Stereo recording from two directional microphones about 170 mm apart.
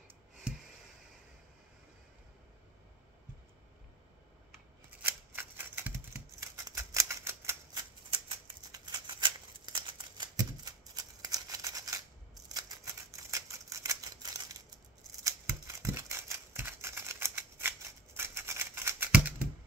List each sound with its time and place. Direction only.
5.0 s scissors: 10° right (ahead or behind)
8.1 s a sound: 30° right (ahead or behind)
11.2 s scissors: 20° right (ahead or behind)